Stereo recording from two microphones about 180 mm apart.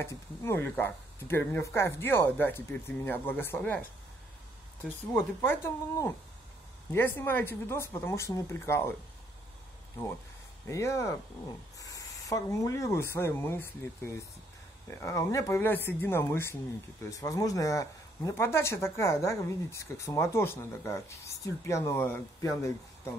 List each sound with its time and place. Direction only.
0.0 s speech: 15° left (ahead or behind)
5.1 s speech: 15° left (ahead or behind)
10.7 s speech: 15° left (ahead or behind)